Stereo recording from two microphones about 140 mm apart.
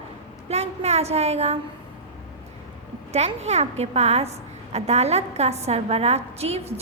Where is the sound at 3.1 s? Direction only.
50° right (ahead or behind).